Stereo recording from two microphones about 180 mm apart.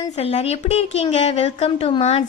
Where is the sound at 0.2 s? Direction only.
35° left (ahead or behind).